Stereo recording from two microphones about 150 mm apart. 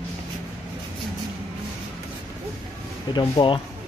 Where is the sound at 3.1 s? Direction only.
30° left (ahead or behind).